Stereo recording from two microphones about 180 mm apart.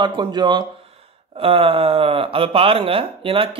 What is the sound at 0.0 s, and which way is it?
Speech, 25° right (ahead or behind).